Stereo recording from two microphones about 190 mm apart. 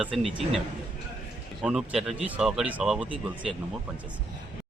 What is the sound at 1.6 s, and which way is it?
Speech, centre (ahead or behind).